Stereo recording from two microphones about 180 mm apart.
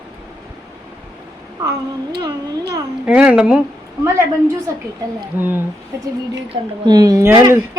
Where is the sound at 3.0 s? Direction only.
5° right (ahead or behind).